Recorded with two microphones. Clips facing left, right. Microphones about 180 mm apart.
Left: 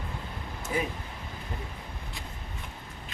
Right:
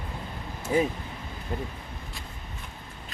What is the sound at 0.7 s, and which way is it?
Speech, 30° right (ahead or behind).